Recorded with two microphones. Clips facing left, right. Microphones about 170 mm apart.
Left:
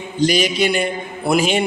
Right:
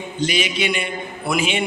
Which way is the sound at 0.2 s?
40° left (ahead or behind).